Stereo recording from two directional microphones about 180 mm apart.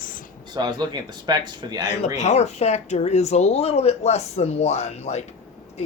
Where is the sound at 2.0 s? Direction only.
40° left (ahead or behind).